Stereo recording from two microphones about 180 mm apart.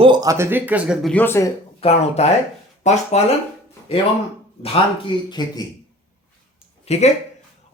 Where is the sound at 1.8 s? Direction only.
35° left (ahead or behind).